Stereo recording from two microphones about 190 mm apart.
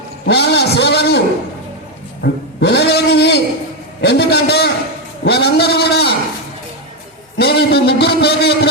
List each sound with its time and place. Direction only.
0.3 s speech: 60° left (ahead or behind)
2.2 s speech: 60° left (ahead or behind)
7.3 s a man's voice: 60° left (ahead or behind)